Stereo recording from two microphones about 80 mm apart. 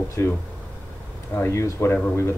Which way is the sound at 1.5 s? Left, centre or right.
Left.